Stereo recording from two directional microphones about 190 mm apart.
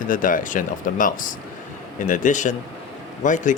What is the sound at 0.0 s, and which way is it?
Speech, 45° left (ahead or behind).